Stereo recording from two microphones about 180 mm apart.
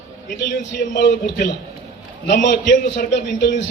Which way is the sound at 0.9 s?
70° left (ahead or behind).